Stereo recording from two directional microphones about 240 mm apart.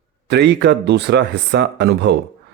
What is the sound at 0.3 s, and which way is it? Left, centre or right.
Speech, right.